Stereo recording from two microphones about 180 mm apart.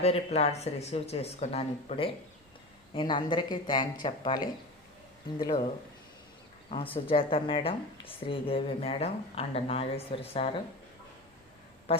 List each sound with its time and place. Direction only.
0.0 s a woman's voice: 35° left (ahead or behind)
5.4 s speech: 25° left (ahead or behind)
6.9 s a woman's voice: 30° left (ahead or behind)
11.9 s quack: 30° left (ahead or behind)